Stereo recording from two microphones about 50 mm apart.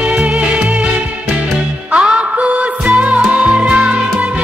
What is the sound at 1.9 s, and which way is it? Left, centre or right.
Music, right.